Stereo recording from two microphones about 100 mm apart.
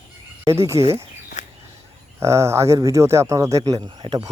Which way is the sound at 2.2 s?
30° right (ahead or behind).